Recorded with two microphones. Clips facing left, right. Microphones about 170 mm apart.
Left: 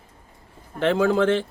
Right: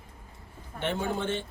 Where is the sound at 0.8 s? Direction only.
90° left.